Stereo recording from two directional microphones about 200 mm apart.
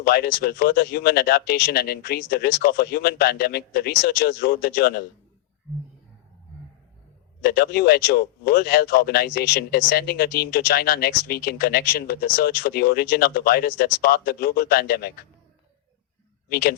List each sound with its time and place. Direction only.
0.0 s speech: 50° left (ahead or behind)
7.4 s speech: 50° left (ahead or behind)
16.5 s speech: 50° left (ahead or behind)